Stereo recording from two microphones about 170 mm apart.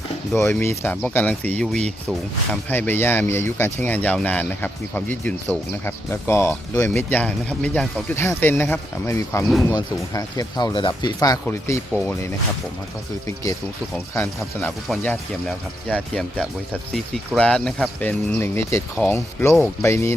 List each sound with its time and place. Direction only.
0.3 s speech: 15° left (ahead or behind)
15.0 s speech: 5° left (ahead or behind)